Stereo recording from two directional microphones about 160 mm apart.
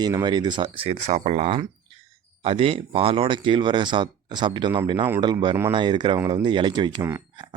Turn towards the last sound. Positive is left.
turn(degrees=-30)  # may be behind; listen again after turning